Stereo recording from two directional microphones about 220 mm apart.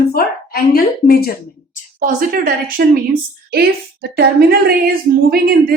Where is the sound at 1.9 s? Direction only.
40° right (ahead or behind).